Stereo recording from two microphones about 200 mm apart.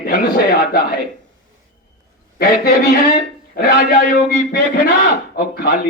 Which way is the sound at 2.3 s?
50° left (ahead or behind).